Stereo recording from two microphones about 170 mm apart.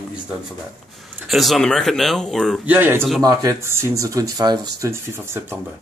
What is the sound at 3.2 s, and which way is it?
Speech, 20° right (ahead or behind).